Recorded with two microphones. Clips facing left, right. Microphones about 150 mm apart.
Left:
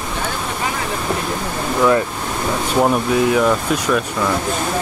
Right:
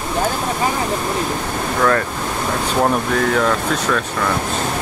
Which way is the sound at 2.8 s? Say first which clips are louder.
Left 2 dB; 10° left (ahead or behind).